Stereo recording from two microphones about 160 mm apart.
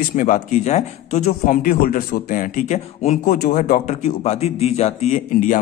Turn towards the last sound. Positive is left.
turn(degrees=55)  # may be behind; listen again after turning